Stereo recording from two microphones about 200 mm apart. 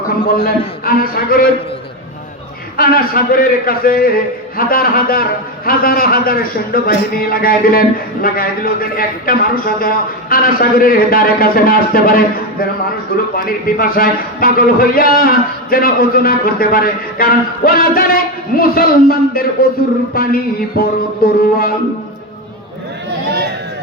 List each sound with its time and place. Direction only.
0.3 s a man's voice: 45° left (ahead or behind)
2.7 s a man's voice: 45° left (ahead or behind)
23.3 s chatter: 55° right (ahead or behind)